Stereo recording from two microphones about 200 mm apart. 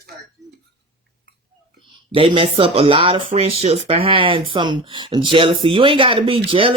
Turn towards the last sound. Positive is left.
turn(degrees=-25)  # may be behind; listen again after turning